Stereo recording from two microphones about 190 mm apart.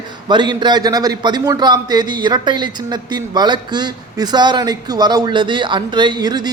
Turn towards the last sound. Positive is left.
turn(degrees=-20)  # may be behind; listen again after turning